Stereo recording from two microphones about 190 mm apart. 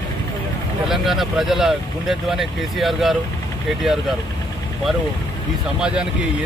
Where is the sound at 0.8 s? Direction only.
Centre (ahead or behind).